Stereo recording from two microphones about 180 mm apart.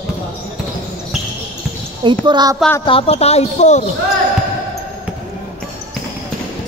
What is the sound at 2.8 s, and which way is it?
A woman's voice, 30° left (ahead or behind).